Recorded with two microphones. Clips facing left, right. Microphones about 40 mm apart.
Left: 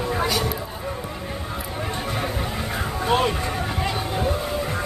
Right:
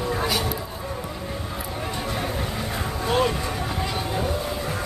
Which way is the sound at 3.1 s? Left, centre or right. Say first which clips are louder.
Left 1 dB; centre.